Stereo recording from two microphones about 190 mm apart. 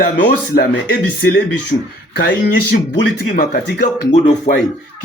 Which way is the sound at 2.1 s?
60° left (ahead or behind).